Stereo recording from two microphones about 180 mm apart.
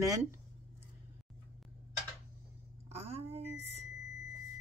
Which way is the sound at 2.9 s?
35° right (ahead or behind).